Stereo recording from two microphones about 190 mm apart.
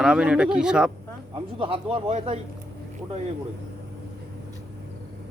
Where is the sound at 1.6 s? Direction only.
30° right (ahead or behind).